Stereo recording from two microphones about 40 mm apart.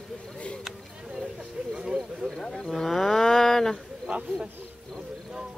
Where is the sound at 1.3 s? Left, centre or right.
Centre.